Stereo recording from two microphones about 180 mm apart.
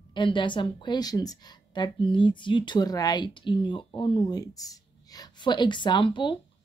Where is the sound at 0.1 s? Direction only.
25° left (ahead or behind).